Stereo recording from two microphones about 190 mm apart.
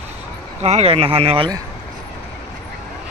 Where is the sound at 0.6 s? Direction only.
35° right (ahead or behind).